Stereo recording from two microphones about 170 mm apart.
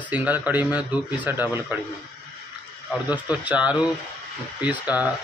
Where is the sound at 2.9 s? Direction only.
10° right (ahead or behind).